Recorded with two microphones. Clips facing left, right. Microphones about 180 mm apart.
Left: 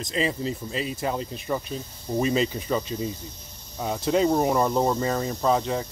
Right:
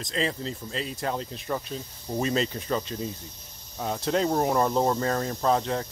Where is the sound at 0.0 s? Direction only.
10° left (ahead or behind).